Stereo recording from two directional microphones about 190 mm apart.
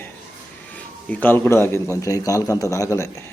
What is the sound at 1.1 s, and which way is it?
A man's voice, 10° left (ahead or behind).